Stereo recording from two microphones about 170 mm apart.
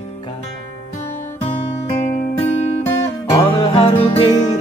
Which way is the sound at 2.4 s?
40° left (ahead or behind).